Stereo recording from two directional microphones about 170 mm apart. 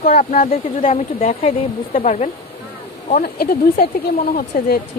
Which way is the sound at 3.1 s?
60° left (ahead or behind).